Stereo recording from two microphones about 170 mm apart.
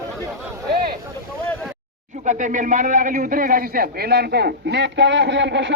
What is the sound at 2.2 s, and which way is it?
A man's voice, 45° right (ahead or behind).